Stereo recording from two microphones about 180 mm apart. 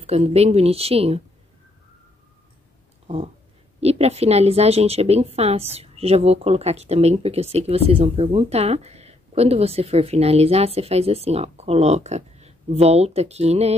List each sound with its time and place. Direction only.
0.0 s speech: 35° right (ahead or behind)
3.8 s speech: 35° right (ahead or behind)